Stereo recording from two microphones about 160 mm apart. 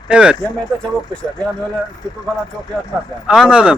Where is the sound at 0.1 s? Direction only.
5° right (ahead or behind).